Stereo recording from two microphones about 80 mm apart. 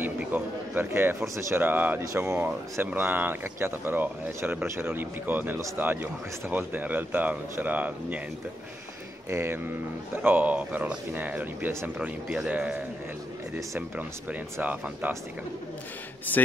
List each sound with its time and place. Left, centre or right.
0.2 s speech: right
9.3 s speech: right
10.2 s speech: right
14.6 s speech: centre
16.3 s speech: left